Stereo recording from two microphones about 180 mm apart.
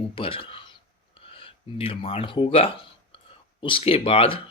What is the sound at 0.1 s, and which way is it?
Speech, 30° left (ahead or behind).